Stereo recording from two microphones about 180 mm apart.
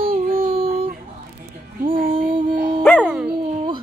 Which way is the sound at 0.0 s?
50° right (ahead or behind).